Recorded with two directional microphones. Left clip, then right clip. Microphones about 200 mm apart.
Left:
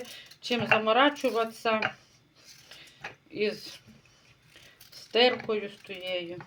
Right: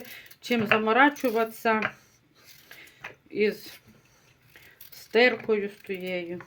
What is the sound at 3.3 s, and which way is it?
Speech, 50° right (ahead or behind).